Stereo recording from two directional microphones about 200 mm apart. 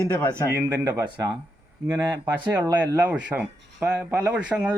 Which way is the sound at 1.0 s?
20° right (ahead or behind).